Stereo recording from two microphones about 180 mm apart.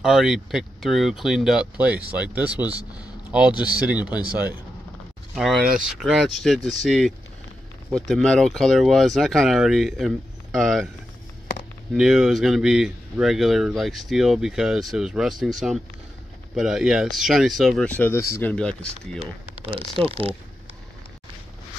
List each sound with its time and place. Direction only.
0.0 s speech: 5° right (ahead or behind)
2.8 s speech: 20° left (ahead or behind)
3.3 s speech: 5° right (ahead or behind)
11.9 s speech: 5° right (ahead or behind)
20.0 s speech: 30° right (ahead or behind)